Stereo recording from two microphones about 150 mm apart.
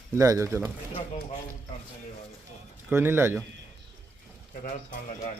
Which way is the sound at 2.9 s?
15° right (ahead or behind).